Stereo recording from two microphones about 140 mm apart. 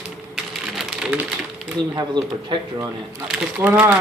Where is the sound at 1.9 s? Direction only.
30° right (ahead or behind).